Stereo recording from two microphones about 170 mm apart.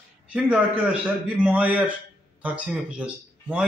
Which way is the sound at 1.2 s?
5° right (ahead or behind).